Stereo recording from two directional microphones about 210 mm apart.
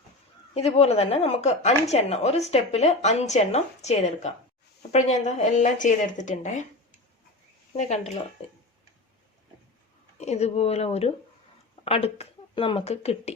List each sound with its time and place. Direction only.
0.5 s speech: 30° left (ahead or behind)
7.7 s speech: 30° left (ahead or behind)
10.2 s speech: 30° left (ahead or behind)